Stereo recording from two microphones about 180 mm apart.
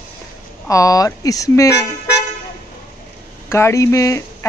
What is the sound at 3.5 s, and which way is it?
Speech, 15° left (ahead or behind).